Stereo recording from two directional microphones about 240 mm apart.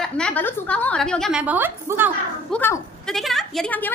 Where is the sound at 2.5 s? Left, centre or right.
Centre.